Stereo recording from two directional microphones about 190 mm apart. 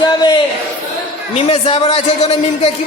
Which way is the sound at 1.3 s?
30° left (ahead or behind).